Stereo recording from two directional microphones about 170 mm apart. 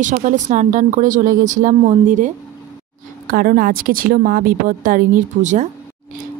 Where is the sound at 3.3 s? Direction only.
60° right (ahead or behind).